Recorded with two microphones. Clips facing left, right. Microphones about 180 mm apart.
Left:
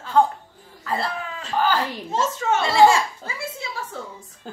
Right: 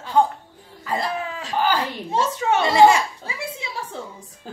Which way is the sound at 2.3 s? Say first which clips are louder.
Right 2 dB; 15° right (ahead or behind).